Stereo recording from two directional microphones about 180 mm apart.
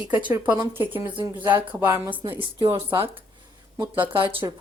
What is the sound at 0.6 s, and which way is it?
Speech, 10° right (ahead or behind).